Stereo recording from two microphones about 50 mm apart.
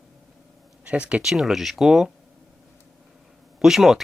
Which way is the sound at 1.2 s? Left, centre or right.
Centre.